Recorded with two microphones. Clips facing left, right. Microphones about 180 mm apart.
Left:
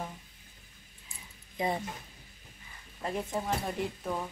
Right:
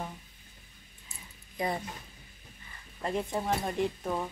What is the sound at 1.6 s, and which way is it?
Speech, 25° left (ahead or behind).